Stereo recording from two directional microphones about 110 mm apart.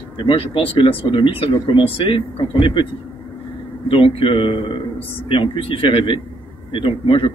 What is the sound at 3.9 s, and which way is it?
A man's voice, 55° left (ahead or behind).